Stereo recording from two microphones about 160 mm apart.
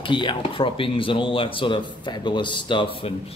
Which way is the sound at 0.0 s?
30° left (ahead or behind).